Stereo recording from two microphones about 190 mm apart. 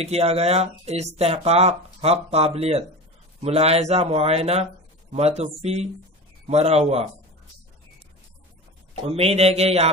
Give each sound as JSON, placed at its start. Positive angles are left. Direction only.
{"t": 0.0, "sound": "speech", "side_deg": -35}
{"t": 9.0, "sound": "speech", "side_deg": -30}